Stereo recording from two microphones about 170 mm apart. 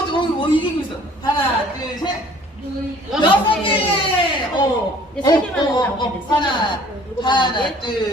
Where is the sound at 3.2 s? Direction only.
30° left (ahead or behind).